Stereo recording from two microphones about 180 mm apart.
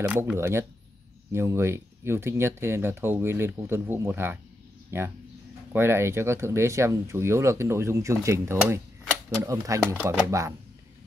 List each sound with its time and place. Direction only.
0.0 s speech: 10° right (ahead or behind)